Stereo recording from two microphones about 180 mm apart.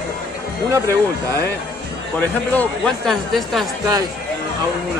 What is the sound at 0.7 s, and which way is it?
Speech, 15° right (ahead or behind).